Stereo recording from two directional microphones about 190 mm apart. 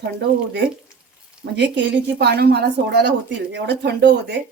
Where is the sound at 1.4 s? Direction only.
70° right (ahead or behind).